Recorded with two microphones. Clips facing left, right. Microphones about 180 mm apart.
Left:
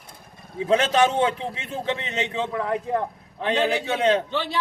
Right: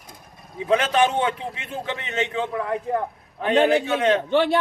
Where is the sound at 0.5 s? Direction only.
30° left (ahead or behind).